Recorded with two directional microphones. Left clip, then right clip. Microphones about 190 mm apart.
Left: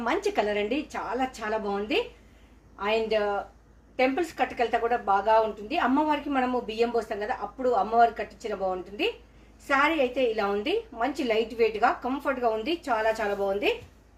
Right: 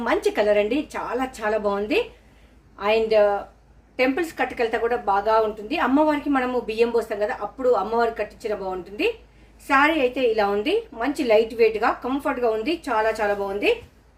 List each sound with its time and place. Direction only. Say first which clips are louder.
0.0 s a woman's voice: right 5 dB; 20° right (ahead or behind)
9.6 s a woman's voice: right 5 dB; 15° right (ahead or behind)